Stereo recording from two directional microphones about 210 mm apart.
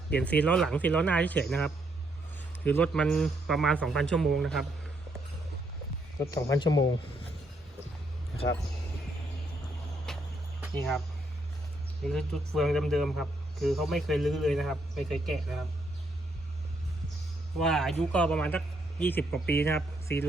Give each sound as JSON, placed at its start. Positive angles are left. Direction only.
{"t": 0.1, "sound": "a man's voice", "side_deg": 5}
{"t": 6.1, "sound": "a man's voice", "side_deg": 15}
{"t": 10.1, "sound": "music", "side_deg": 0}
{"t": 10.6, "sound": "speech", "side_deg": 0}
{"t": 12.0, "sound": "a man's voice", "side_deg": 5}
{"t": 17.6, "sound": "a man's voice", "side_deg": 0}